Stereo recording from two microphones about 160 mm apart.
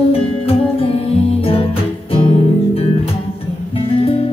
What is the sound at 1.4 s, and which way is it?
Music, 35° left (ahead or behind).